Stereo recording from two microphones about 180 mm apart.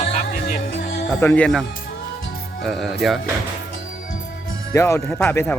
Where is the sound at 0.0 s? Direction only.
40° left (ahead or behind).